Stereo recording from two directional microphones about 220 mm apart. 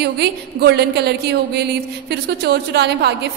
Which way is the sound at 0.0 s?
50° right (ahead or behind).